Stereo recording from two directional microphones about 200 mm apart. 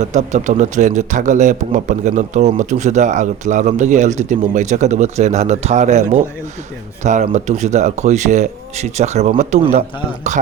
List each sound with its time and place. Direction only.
0.0 s a man's voice: 35° right (ahead or behind)